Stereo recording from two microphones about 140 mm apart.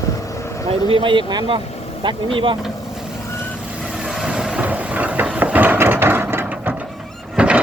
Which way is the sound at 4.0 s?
5° right (ahead or behind).